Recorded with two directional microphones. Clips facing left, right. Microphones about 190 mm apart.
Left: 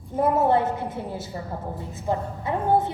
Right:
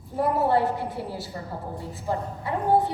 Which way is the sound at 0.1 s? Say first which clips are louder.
Left 2 dB; 20° left (ahead or behind).